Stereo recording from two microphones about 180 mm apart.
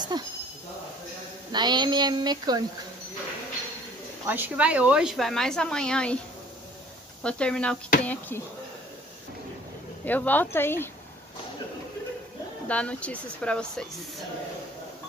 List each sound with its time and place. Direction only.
0.1 s speech: 25° right (ahead or behind)
1.5 s speech: 25° right (ahead or behind)
4.3 s speech: 10° right (ahead or behind)
7.2 s speech: 5° left (ahead or behind)
10.0 s speech: 10° left (ahead or behind)
12.6 s speech: 5° left (ahead or behind)